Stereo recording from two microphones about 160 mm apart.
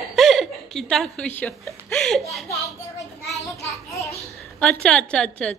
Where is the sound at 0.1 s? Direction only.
Centre (ahead or behind).